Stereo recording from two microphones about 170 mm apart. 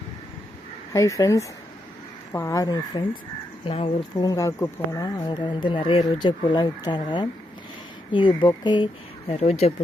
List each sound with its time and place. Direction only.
0.9 s speech: 20° left (ahead or behind); by 9.7 s 35° left (ahead or behind)